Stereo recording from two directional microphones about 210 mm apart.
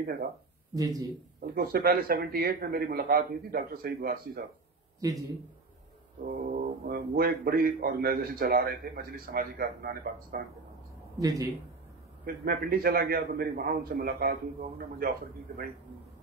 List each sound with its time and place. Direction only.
0.0 s speech: 45° right (ahead or behind)
0.7 s a man's voice: 15° right (ahead or behind)
1.4 s speech: 45° right (ahead or behind)
5.0 s a man's voice: 15° right (ahead or behind)
6.2 s speech: 45° right (ahead or behind)
11.1 s a man's voice: 15° right (ahead or behind)
12.4 s speech: 45° right (ahead or behind)